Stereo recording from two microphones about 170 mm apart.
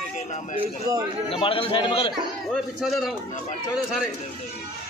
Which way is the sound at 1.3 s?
35° left (ahead or behind).